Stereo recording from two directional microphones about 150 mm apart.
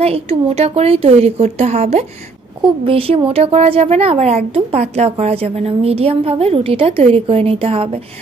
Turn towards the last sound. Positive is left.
turn(degrees=-40)  # may be behind; listen again after turning